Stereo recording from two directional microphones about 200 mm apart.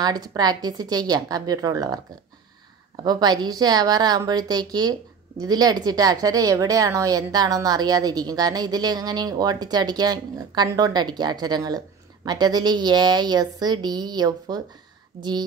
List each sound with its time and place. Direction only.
0.0 s a woman's voice: 20° right (ahead or behind)
3.0 s a woman's voice: 20° right (ahead or behind)